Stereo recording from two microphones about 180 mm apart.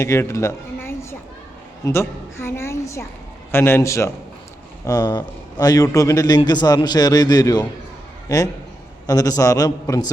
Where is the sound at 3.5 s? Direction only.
15° left (ahead or behind).